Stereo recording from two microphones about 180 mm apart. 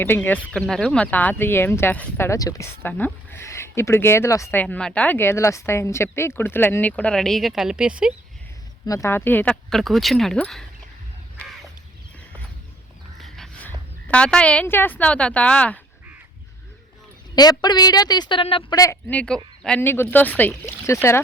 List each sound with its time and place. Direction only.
0.0 s speech: 10° left (ahead or behind); by 8.1 s 5° right (ahead or behind)
8.9 s speech: 15° left (ahead or behind)
13.1 s a sound: centre (ahead or behind)
14.1 s speech: 5° left (ahead or behind)
17.3 s a woman's voice: 20° left (ahead or behind)